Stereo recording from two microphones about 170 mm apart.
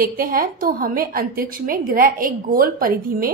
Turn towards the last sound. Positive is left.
turn(degrees=-55)  # may be behind; listen again after turning